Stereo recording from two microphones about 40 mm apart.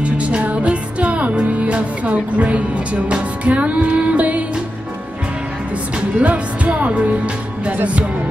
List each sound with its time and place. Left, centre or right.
0.0 s music: right
5.9 s speech: right